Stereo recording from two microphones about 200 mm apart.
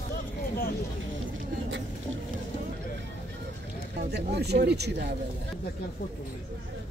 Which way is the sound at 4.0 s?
55° right (ahead or behind).